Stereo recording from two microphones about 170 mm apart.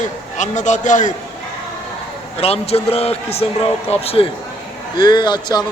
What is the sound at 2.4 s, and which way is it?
A man's voice, 35° left (ahead or behind).